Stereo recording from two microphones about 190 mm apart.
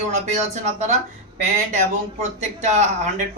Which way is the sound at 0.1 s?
35° right (ahead or behind).